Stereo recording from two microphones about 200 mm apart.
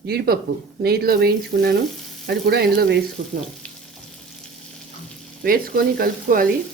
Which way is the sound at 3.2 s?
40° right (ahead or behind).